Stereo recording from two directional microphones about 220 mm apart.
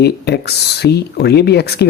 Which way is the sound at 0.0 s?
50° left (ahead or behind).